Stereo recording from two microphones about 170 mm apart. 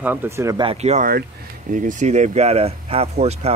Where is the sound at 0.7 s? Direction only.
40° right (ahead or behind).